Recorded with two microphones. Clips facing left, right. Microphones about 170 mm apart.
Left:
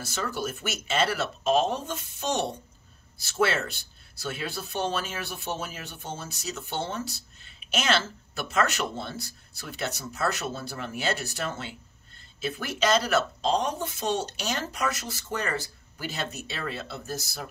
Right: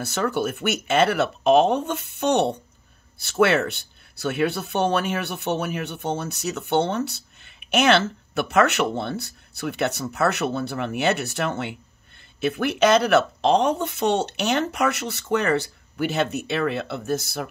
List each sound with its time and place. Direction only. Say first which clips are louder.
0.0 s speech: right 8 dB; 60° right (ahead or behind)